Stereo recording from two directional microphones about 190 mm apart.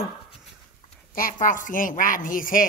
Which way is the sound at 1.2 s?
45° left (ahead or behind).